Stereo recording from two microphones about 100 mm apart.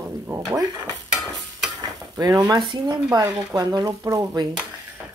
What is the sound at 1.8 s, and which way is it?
Stir, 35° right (ahead or behind).